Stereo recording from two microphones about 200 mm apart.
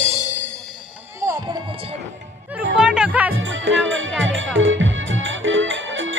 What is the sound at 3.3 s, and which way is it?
Music, 70° right (ahead or behind).